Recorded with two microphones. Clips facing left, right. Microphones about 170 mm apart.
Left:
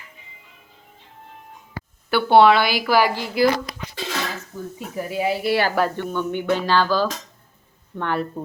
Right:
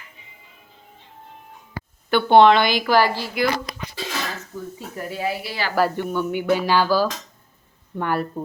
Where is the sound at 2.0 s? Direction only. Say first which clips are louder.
Right 1 dB; 5° left (ahead or behind).